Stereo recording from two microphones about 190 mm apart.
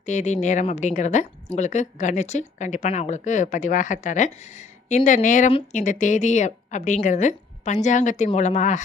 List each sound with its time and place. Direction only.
0.0 s speech: 40° left (ahead or behind)